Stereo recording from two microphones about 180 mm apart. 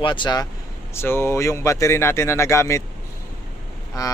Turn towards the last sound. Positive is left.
turn(degrees=20)  # may be behind; listen again after turning